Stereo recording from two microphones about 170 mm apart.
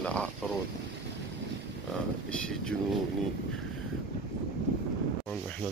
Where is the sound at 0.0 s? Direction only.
5° left (ahead or behind).